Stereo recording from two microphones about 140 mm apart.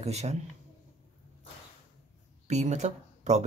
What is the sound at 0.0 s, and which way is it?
Speech, 50° right (ahead or behind).